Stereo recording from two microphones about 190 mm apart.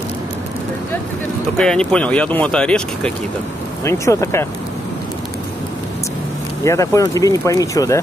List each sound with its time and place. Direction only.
1.6 s speech: 5° left (ahead or behind)
3.8 s speech: 15° left (ahead or behind)
6.6 s speech: 15° left (ahead or behind)